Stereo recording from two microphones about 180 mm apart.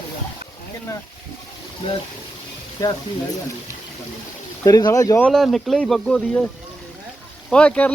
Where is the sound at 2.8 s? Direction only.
20° left (ahead or behind).